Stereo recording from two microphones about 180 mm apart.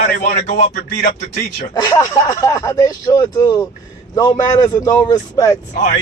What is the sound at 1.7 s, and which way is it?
A man's voice, 20° left (ahead or behind).